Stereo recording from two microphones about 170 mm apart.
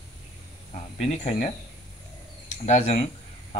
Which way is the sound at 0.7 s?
40° left (ahead or behind).